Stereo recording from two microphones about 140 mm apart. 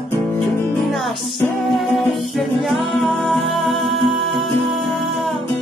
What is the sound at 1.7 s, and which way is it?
Music, centre (ahead or behind).